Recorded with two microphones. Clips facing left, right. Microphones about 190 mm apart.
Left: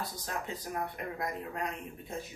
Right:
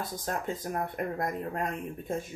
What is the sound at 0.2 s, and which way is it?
Speech, 50° right (ahead or behind).